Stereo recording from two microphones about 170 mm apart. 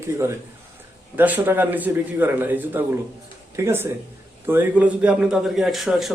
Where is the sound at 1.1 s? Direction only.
10° right (ahead or behind).